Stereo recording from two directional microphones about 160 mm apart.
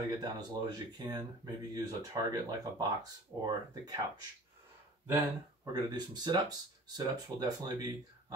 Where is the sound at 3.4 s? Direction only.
25° right (ahead or behind).